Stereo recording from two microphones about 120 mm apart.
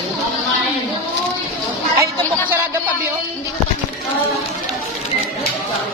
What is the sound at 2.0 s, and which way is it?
Speech, 25° right (ahead or behind).